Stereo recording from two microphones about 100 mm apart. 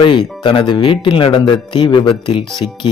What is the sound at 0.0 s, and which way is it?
Speech, 50° left (ahead or behind).